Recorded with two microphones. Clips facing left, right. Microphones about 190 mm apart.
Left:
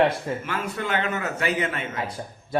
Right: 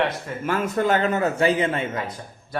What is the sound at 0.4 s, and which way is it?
Speech, 45° right (ahead or behind).